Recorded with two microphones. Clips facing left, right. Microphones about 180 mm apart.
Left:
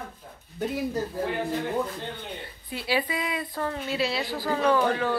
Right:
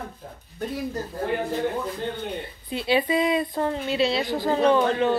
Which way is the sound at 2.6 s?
25° right (ahead or behind).